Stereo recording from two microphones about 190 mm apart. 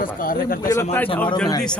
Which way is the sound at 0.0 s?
50° left (ahead or behind).